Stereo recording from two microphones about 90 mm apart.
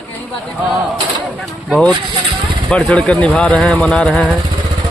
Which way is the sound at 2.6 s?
15° left (ahead or behind).